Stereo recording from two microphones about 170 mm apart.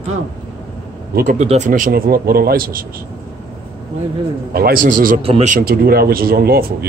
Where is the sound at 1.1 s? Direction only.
50° right (ahead or behind).